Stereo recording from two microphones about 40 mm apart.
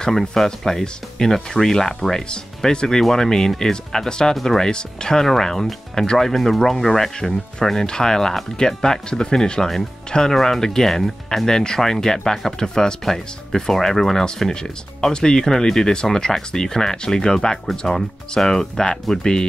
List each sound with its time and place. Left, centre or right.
0.1 s speech: centre
14.5 s speech: centre